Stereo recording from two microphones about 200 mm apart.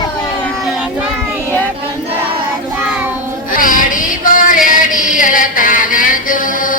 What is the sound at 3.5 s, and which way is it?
Music, 45° left (ahead or behind).